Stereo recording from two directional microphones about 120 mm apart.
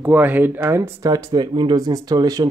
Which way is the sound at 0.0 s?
15° right (ahead or behind).